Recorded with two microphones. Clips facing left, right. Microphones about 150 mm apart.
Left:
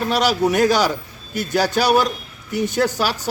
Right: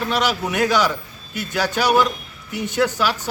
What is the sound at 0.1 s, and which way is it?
A man's voice, 40° left (ahead or behind).